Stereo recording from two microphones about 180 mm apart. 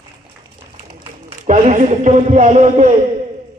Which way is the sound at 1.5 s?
45° right (ahead or behind).